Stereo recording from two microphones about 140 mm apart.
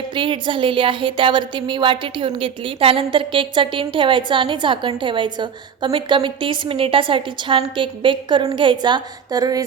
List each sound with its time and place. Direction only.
0.1 s speech: 35° right (ahead or behind)